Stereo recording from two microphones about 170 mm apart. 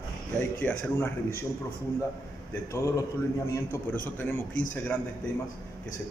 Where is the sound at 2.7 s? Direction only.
20° left (ahead or behind).